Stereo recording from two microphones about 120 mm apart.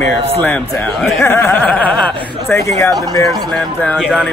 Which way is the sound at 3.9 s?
5° right (ahead or behind).